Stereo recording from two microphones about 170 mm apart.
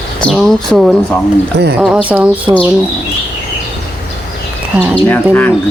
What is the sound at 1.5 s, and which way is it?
Speech, 75° right (ahead or behind).